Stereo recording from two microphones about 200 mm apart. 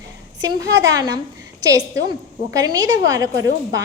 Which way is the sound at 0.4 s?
15° right (ahead or behind).